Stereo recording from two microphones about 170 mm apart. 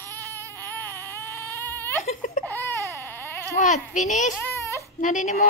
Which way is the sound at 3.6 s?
45° left (ahead or behind).